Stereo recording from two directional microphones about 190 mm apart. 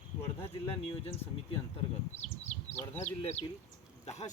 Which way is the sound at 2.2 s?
35° left (ahead or behind).